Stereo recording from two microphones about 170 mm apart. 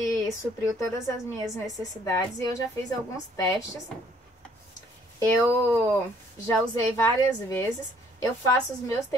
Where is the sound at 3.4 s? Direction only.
20° left (ahead or behind).